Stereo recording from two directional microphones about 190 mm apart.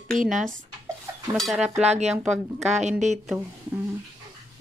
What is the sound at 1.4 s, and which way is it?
Speech, centre (ahead or behind).